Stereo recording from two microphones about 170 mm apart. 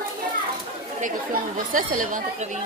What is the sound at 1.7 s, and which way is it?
Speech, 50° right (ahead or behind).